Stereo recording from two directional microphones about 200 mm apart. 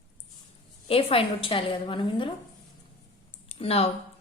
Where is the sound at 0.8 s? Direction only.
25° left (ahead or behind).